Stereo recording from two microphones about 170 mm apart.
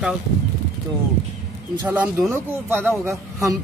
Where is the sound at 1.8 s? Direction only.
10° right (ahead or behind).